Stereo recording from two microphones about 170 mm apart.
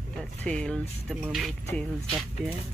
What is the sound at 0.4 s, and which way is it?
Speech, 5° left (ahead or behind).